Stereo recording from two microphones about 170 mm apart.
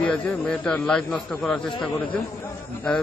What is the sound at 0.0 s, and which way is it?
A man's voice, 5° left (ahead or behind).